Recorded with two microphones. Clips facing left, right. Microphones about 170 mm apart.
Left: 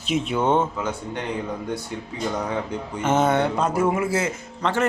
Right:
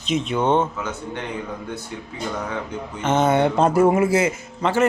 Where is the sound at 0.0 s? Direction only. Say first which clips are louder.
Right 1 dB; 5° left (ahead or behind).